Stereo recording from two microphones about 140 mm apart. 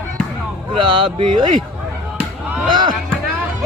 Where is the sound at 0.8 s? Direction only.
35° right (ahead or behind).